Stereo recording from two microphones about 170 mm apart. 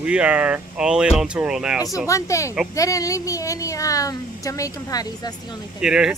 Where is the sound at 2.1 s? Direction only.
20° left (ahead or behind).